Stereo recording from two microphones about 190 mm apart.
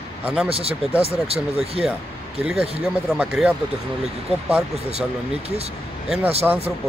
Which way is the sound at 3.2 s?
5° right (ahead or behind).